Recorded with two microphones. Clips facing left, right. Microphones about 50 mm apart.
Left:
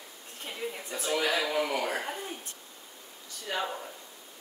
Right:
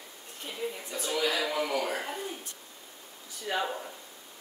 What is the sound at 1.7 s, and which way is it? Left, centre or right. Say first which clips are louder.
Speech: even; left.